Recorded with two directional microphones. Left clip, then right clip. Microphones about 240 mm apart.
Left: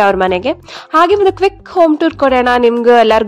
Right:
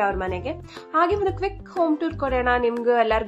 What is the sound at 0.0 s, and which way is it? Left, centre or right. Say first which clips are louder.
A woman's voice: left 13 dB; left.